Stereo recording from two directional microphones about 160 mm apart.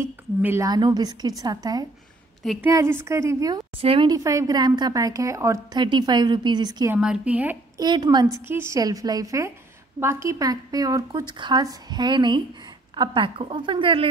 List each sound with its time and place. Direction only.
0.0 s a woman's voice: 15° right (ahead or behind)
3.7 s speech: 35° right (ahead or behind)
4.1 s a woman's voice: 20° right (ahead or behind)
6.9 s a woman's voice: 5° right (ahead or behind)
7.7 s a woman's voice: 25° right (ahead or behind)
8.5 s a woman's voice: 15° right (ahead or behind); by 14.0 s 35° right (ahead or behind)